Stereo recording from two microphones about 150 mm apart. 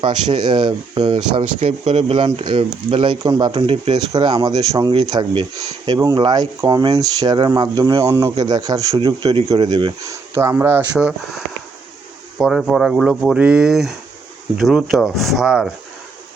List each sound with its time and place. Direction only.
0.0 s speech: 30° right (ahead or behind)
4.1 s speech: 25° right (ahead or behind)
10.9 s speech: 5° right (ahead or behind)